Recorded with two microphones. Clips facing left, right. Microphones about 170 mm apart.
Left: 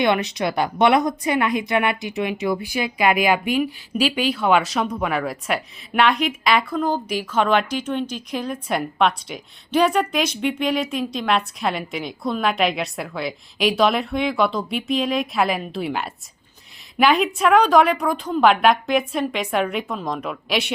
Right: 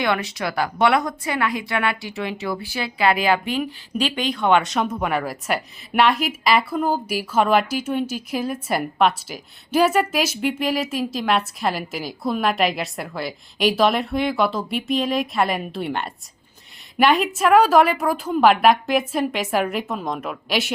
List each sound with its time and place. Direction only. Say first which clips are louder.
0.0 s speech: left 3 dB; 20° left (ahead or behind); by 20.7 s centre (ahead or behind)